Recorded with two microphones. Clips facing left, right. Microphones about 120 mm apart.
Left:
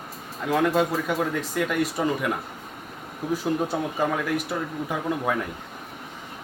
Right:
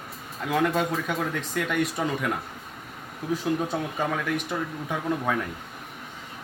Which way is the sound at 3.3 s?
10° left (ahead or behind).